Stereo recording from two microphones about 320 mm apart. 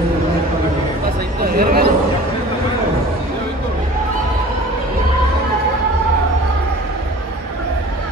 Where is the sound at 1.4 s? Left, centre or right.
Right.